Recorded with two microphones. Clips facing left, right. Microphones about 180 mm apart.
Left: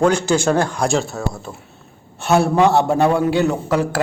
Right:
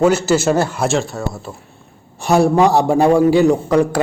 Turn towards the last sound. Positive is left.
turn(degrees=0)  # may be behind; listen again after turning